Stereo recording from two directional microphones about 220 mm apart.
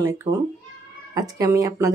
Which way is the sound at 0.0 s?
15° right (ahead or behind).